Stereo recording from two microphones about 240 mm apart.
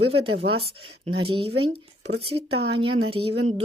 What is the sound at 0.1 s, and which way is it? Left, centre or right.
Speech, right.